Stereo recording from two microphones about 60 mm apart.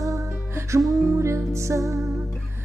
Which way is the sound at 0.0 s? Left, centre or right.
Right.